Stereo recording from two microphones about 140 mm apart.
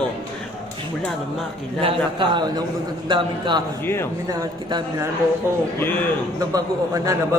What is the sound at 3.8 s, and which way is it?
Speech, 15° left (ahead or behind).